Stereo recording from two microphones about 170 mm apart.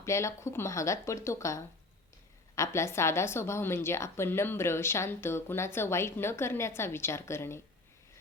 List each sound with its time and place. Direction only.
0.0 s a woman's voice: 15° left (ahead or behind)